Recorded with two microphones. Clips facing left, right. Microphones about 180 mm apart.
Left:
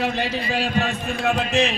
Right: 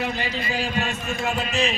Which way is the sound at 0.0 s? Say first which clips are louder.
Left 3 dB; 65° left (ahead or behind).